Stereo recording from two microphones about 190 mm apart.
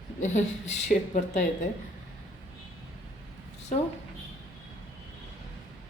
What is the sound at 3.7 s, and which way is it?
Speech, 45° left (ahead or behind).